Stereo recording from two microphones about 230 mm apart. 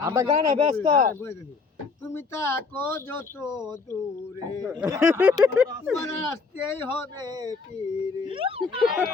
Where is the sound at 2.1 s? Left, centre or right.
Centre.